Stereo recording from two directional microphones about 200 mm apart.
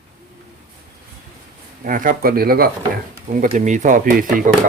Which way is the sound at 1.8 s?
45° right (ahead or behind).